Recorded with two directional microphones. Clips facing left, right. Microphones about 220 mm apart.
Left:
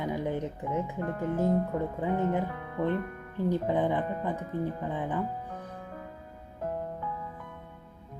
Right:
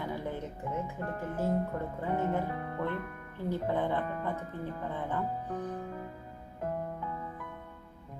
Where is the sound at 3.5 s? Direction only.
15° left (ahead or behind).